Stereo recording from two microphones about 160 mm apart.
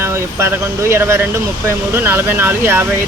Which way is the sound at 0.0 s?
15° right (ahead or behind).